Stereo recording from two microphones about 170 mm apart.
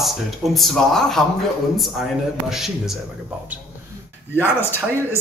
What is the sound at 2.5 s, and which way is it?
Speech, centre (ahead or behind).